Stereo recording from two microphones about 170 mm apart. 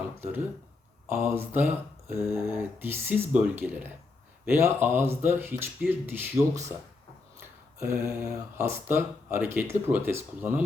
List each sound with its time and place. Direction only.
0.2 s speech: 10° right (ahead or behind)
7.8 s speech: 15° right (ahead or behind)